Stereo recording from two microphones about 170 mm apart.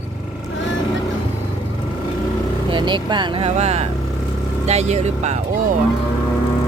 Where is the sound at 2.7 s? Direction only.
25° right (ahead or behind).